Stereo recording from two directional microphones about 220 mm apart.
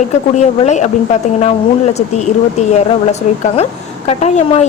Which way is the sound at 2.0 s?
30° left (ahead or behind).